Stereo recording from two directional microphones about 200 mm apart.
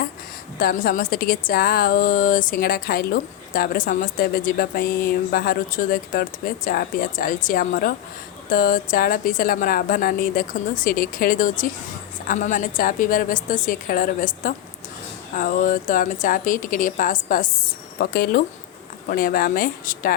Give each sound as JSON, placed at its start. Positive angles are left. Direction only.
{"t": 0.6, "sound": "a woman's voice", "side_deg": 45}